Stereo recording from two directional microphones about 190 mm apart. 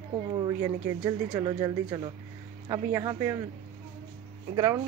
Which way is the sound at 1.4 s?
25° right (ahead or behind).